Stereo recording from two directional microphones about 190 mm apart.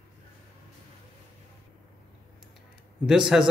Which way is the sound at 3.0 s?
5° right (ahead or behind).